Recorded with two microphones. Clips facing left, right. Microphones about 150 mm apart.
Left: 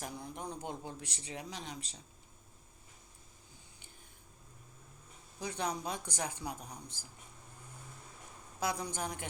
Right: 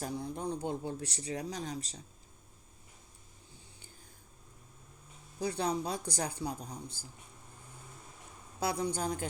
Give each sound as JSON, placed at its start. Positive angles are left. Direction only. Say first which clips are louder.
{"t": 0.0, "sound": "a man's voice", "louder": "right 6 dB", "side_deg": -30}
{"t": 5.4, "sound": "a man's voice", "louder": "right 5 dB", "side_deg": -35}
{"t": 8.6, "sound": "a man's voice", "louder": "right 4 dB", "side_deg": -30}